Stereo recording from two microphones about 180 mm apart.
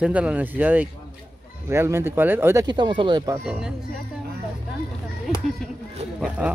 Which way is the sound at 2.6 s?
25° right (ahead or behind).